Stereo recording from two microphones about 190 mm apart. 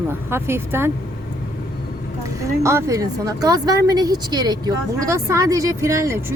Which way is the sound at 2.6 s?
15° right (ahead or behind).